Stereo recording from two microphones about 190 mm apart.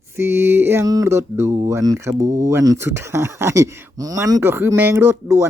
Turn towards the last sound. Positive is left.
turn(degrees=-15)  # may be behind; listen again after turning